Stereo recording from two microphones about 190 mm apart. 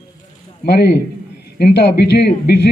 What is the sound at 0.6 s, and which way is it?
Speech, 60° left (ahead or behind).